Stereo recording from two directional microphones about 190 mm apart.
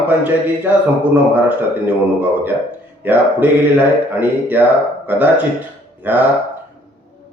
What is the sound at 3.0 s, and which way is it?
Speech, 10° right (ahead or behind).